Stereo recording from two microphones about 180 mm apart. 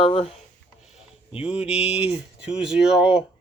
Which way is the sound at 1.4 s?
5° right (ahead or behind).